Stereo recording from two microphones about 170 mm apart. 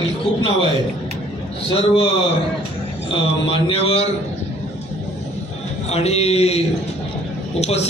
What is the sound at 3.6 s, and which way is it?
Speech, 35° left (ahead or behind).